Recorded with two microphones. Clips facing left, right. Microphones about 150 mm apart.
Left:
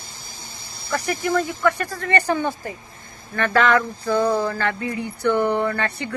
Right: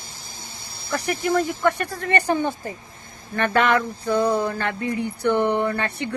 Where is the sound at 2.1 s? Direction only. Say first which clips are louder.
Even; 20° right (ahead or behind).